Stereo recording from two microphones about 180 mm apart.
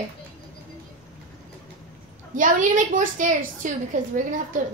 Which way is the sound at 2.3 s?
45° right (ahead or behind).